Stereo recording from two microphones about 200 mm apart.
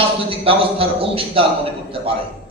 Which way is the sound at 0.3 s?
30° right (ahead or behind).